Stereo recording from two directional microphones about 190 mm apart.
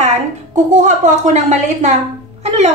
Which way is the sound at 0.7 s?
40° right (ahead or behind).